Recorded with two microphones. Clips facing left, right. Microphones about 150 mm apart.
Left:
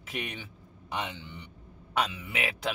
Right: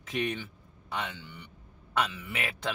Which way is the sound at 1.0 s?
20° left (ahead or behind).